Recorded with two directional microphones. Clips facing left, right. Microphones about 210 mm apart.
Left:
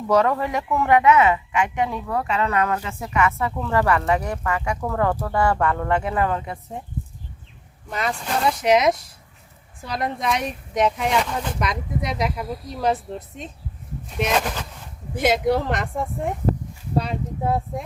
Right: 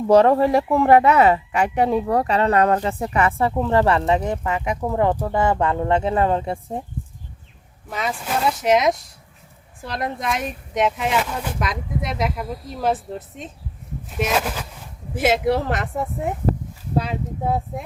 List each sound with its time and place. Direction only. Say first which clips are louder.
0.1 s speech: right 6 dB; 30° right (ahead or behind)
7.9 s speech: even; centre (ahead or behind)